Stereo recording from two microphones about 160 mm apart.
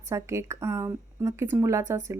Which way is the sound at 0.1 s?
20° right (ahead or behind).